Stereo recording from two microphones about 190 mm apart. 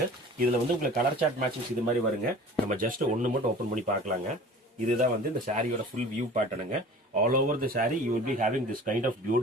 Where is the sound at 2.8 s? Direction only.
45° right (ahead or behind).